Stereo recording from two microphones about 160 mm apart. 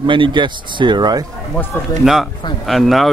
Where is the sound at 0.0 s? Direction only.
30° right (ahead or behind).